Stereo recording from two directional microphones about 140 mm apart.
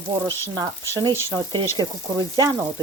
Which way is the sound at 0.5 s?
25° right (ahead or behind).